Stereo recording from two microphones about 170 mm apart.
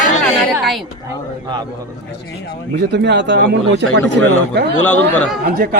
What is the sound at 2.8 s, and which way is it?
Speech, 90° right.